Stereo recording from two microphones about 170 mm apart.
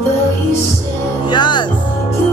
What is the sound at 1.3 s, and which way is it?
Music, 25° left (ahead or behind).